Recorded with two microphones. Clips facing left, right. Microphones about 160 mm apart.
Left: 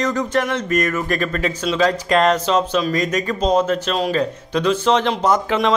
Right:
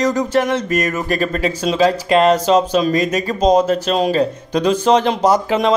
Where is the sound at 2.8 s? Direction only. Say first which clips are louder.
Right 3 dB; 20° right (ahead or behind).